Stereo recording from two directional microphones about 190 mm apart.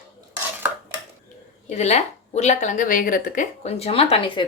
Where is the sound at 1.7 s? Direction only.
35° left (ahead or behind).